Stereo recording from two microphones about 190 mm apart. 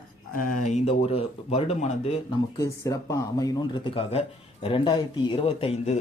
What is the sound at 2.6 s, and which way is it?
Speech, 15° left (ahead or behind).